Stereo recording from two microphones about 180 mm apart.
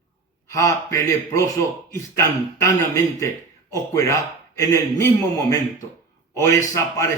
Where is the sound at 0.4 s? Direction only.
15° left (ahead or behind).